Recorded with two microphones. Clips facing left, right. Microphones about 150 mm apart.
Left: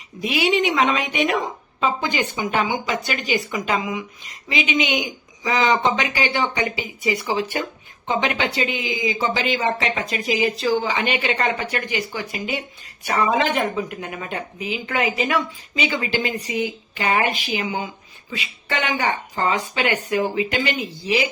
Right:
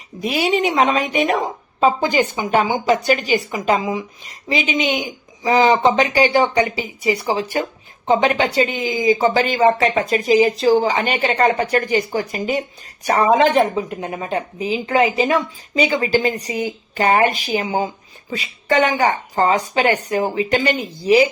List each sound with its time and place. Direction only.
0.2 s speech: 40° right (ahead or behind)